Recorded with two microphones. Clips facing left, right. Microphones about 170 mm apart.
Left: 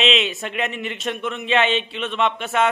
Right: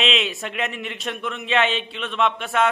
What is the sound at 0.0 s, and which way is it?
Speech, centre (ahead or behind).